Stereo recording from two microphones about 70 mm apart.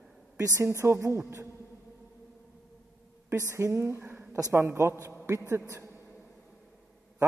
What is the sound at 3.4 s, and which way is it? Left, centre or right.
A man's voice, right.